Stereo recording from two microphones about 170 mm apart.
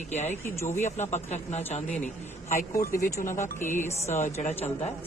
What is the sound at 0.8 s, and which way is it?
Speech, 45° left (ahead or behind).